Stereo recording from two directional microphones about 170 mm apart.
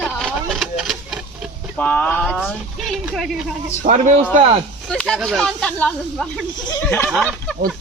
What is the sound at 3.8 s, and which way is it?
Speech, 45° right (ahead or behind).